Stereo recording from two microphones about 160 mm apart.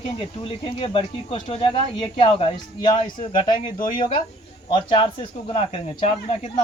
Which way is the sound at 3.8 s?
55° left (ahead or behind).